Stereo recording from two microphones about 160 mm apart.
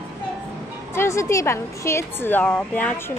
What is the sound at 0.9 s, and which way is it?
Speech, 15° left (ahead or behind).